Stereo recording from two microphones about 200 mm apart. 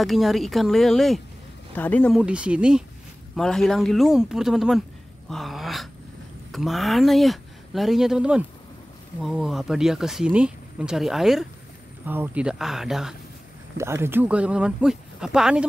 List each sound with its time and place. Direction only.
0.0 s speech: centre (ahead or behind)
2.2 s speech: 5° right (ahead or behind)
5.3 s a sound: centre (ahead or behind)
6.5 s speech: centre (ahead or behind)
13.7 s speech: 10° right (ahead or behind)